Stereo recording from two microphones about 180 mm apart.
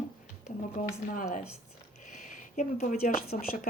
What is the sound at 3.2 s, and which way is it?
Speech, 55° left (ahead or behind).